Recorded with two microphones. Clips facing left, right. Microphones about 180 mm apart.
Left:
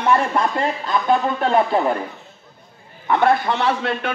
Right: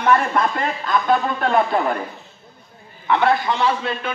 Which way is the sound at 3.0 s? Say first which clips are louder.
Left 1 dB; 45° left (ahead or behind).